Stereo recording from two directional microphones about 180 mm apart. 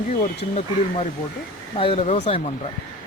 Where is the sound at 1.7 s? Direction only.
30° left (ahead or behind).